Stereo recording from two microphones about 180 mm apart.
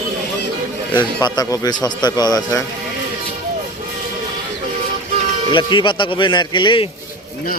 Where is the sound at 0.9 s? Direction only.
25° left (ahead or behind).